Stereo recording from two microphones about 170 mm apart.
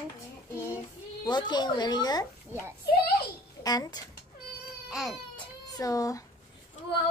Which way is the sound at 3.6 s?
20° left (ahead or behind).